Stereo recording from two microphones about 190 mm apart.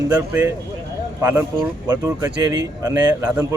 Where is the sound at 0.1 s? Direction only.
15° right (ahead or behind).